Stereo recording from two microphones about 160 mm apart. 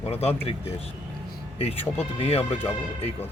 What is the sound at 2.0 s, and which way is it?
Speech, 40° left (ahead or behind).